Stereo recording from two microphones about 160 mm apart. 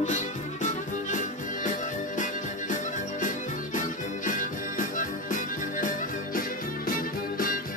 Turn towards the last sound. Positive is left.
turn(degrees=60)  # may be behind; listen again after turning